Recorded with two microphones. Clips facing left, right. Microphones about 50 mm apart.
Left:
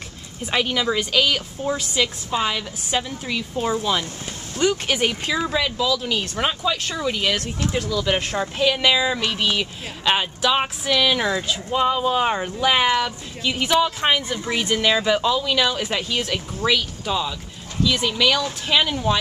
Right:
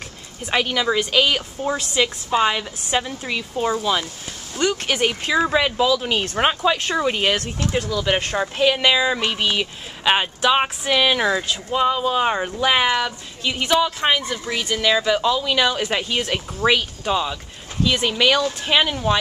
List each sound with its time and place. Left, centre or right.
0.5 s speech: centre
5.6 s speech: right
7.3 s speech: centre
11.4 s speech: centre